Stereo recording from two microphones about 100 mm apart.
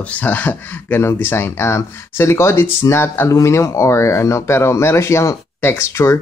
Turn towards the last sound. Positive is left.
turn(degrees=25)  # may be behind; listen again after turning